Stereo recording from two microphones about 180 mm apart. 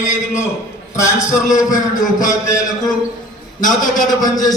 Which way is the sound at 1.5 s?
45° left (ahead or behind).